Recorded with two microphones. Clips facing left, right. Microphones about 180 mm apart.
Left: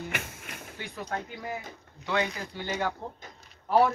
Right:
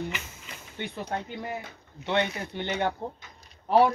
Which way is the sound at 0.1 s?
55° left (ahead or behind).